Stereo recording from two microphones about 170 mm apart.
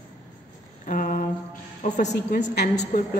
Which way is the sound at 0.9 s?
55° left (ahead or behind).